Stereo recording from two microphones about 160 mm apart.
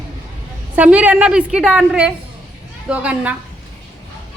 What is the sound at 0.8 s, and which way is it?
A woman's voice, 10° right (ahead or behind).